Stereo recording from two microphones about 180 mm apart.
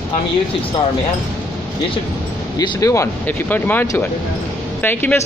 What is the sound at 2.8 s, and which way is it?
Speech, 15° left (ahead or behind).